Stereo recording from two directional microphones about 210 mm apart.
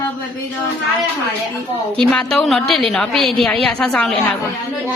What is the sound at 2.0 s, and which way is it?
A woman's voice, 5° left (ahead or behind).